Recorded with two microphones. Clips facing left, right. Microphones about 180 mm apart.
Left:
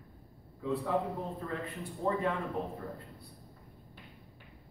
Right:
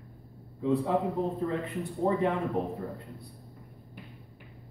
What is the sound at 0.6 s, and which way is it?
Speech, 20° right (ahead or behind).